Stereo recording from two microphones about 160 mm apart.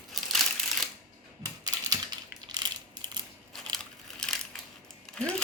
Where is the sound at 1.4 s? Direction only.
20° right (ahead or behind).